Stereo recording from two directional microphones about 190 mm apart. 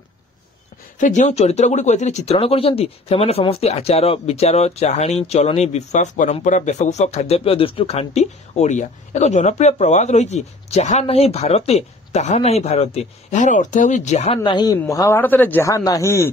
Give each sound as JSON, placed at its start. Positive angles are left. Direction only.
{"t": 0.9, "sound": "speech", "side_deg": 40}